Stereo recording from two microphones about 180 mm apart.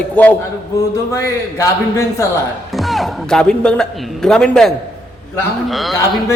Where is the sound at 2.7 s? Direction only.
Centre (ahead or behind).